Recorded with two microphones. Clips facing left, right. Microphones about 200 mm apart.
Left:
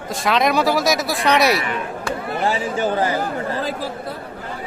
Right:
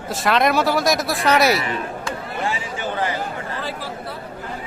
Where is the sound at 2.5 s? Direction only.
40° left (ahead or behind).